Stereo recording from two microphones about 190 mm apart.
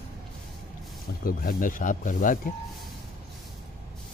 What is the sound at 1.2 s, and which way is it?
Speech, 45° left (ahead or behind).